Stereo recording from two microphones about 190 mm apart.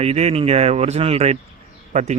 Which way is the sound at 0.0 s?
35° right (ahead or behind).